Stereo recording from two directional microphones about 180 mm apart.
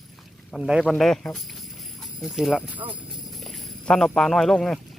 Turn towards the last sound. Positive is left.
turn(degrees=0)  # may be behind; listen again after turning